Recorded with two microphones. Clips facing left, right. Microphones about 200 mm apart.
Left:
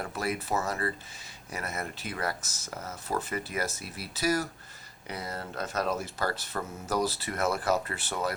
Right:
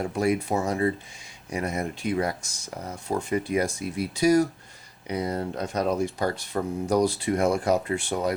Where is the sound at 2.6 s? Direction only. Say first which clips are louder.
Right 4 dB; 15° right (ahead or behind).